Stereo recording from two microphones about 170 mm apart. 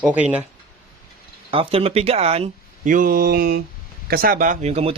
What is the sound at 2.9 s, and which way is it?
Speech, 55° right (ahead or behind).